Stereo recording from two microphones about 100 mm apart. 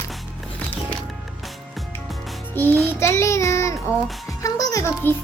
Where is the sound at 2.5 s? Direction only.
20° left (ahead or behind).